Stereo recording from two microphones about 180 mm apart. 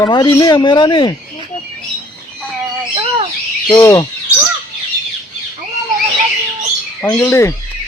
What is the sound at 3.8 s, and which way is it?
Speech, 20° left (ahead or behind).